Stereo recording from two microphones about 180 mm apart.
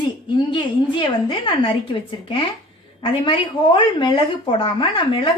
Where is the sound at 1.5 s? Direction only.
30° left (ahead or behind).